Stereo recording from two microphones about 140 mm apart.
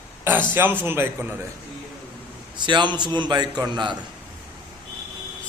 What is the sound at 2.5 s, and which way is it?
A man's voice, 35° right (ahead or behind).